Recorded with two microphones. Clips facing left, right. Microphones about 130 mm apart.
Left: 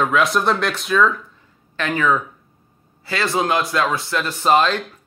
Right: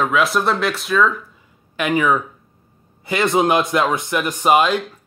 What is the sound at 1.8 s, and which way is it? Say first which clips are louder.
A man's voice: right 2 dB; 15° right (ahead or behind).